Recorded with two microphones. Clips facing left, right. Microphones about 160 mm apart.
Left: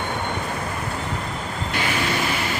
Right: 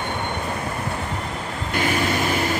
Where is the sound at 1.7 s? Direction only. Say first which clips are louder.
Right 3 dB; 45° right (ahead or behind).